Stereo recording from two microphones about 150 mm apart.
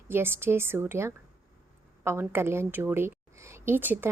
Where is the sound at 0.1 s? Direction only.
15° right (ahead or behind).